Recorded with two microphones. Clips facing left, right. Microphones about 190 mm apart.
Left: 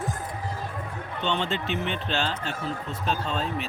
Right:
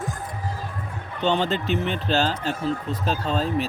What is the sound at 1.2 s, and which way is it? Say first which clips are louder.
Speech: right 6 dB; 40° right (ahead or behind).